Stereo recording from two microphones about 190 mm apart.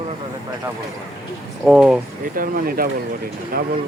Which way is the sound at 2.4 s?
50° right (ahead or behind).